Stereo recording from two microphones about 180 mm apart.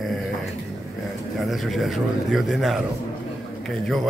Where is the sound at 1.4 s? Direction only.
Centre (ahead or behind).